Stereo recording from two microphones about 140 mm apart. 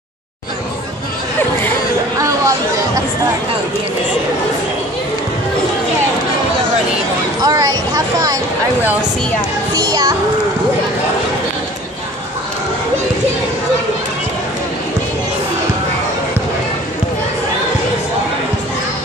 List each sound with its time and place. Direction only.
2.1 s chatter: 25° right (ahead or behind)
7.4 s speech: 25° right (ahead or behind)
9.8 s a child's voice: 30° right (ahead or behind)